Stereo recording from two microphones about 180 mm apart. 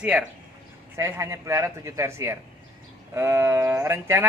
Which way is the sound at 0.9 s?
15° right (ahead or behind).